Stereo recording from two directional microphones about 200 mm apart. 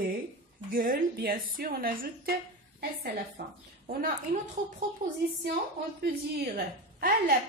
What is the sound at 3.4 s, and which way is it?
Speech, 50° right (ahead or behind).